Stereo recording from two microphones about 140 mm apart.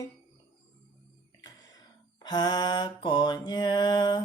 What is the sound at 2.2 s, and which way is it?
Mantra, 30° left (ahead or behind).